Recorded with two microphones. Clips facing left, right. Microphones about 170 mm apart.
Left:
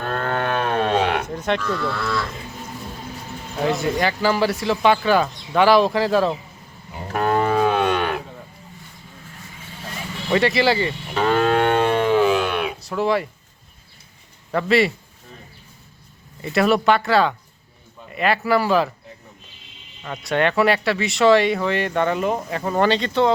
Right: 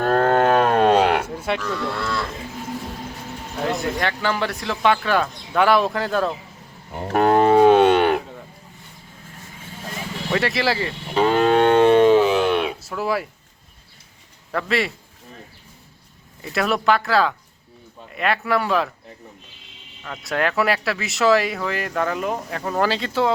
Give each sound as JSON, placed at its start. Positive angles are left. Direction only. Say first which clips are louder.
{"t": 0.0, "sound": "cattle", "louder": "right 7 dB", "side_deg": -40}
{"t": 1.3, "sound": "speech", "louder": "left 2 dB", "side_deg": -5}
{"t": 3.6, "sound": "speech", "louder": "left 3 dB", "side_deg": 0}
{"t": 7.2, "sound": "cattle", "louder": "right 5 dB", "side_deg": -25}
{"t": 10.3, "sound": "speech", "louder": "left 4 dB", "side_deg": 0}
{"t": 11.1, "sound": "livestock", "louder": "right 2 dB", "side_deg": -20}
{"t": 12.8, "sound": "speech", "louder": "left 3 dB", "side_deg": 0}
{"t": 14.5, "sound": "speech", "louder": "left 5 dB", "side_deg": 0}
{"t": 16.4, "sound": "speech", "louder": "left 4 dB", "side_deg": 0}
{"t": 20.0, "sound": "speech", "louder": "left 3 dB", "side_deg": 0}